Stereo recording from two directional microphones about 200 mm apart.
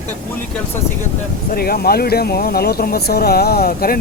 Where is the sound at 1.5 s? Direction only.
50° left (ahead or behind).